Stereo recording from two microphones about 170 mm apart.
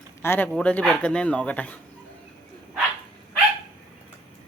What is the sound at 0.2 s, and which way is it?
Speech, 10° left (ahead or behind).